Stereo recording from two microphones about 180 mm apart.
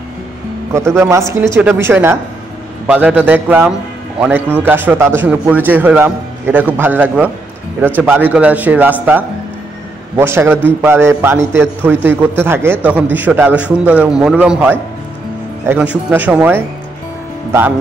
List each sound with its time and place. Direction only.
0.7 s a man's voice: 15° right (ahead or behind)
8.3 s a man's voice: 10° right (ahead or behind)
10.1 s a man's voice: 10° right (ahead or behind)